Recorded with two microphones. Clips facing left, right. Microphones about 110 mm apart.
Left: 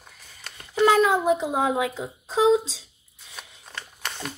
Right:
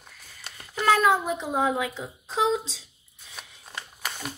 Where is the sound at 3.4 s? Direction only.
10° right (ahead or behind).